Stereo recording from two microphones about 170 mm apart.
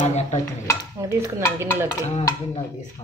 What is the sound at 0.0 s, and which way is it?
Stir, 40° left (ahead or behind).